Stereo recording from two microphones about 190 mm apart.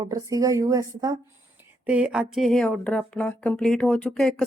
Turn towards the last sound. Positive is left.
turn(degrees=0)  # may be behind; listen again after turning